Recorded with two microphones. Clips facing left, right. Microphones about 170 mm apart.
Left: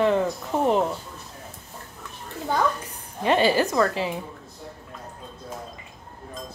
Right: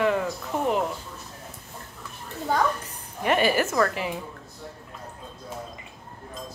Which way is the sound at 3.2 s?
25° left (ahead or behind).